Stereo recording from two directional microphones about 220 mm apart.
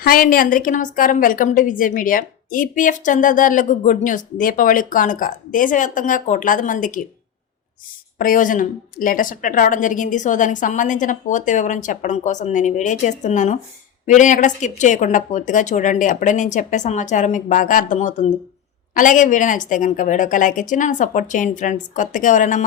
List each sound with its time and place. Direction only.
0.0 s a woman's voice: 40° left (ahead or behind)
8.2 s a woman's voice: 40° left (ahead or behind)